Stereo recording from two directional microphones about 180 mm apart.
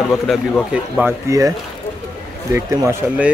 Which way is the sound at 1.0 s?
20° right (ahead or behind).